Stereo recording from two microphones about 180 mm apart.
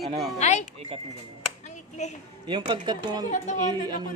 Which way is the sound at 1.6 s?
40° left (ahead or behind).